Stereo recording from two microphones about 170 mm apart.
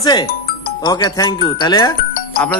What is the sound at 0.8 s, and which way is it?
Speech, 25° left (ahead or behind).